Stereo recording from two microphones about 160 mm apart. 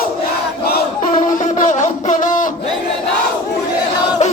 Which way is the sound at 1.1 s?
50° left (ahead or behind).